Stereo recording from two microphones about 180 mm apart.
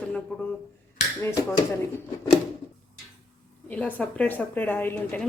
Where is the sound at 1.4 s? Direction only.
20° left (ahead or behind).